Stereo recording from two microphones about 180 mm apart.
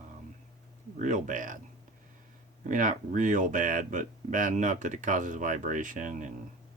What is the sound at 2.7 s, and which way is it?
Speech, 45° right (ahead or behind).